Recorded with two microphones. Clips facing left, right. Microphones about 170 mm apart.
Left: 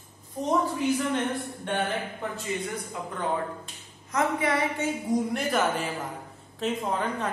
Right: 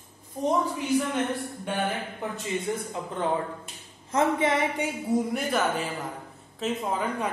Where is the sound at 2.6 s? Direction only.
25° right (ahead or behind).